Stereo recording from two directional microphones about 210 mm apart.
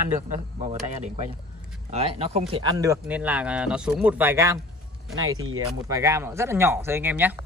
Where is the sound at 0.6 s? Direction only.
35° right (ahead or behind).